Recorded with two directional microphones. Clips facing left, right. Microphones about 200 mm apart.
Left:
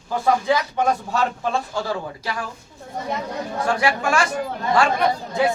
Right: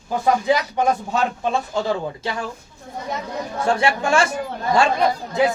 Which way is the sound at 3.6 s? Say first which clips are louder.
Right 2 dB; 25° right (ahead or behind).